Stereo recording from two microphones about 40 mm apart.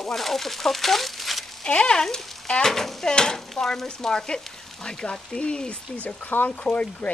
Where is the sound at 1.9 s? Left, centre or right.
Centre.